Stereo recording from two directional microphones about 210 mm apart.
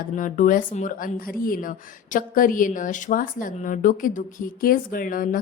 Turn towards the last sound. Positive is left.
turn(degrees=40)  # may be behind; listen again after turning